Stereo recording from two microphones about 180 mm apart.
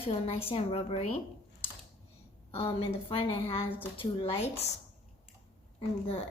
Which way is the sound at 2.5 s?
30° left (ahead or behind).